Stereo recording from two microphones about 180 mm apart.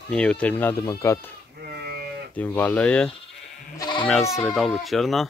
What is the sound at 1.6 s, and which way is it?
Sheep, 60° right (ahead or behind).